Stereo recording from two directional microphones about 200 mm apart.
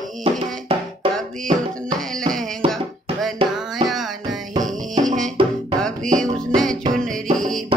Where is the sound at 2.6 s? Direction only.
30° right (ahead or behind).